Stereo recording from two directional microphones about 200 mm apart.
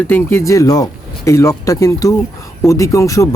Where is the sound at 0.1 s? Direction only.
10° left (ahead or behind).